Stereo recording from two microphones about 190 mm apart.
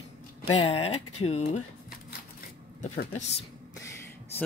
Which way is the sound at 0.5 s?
30° left (ahead or behind).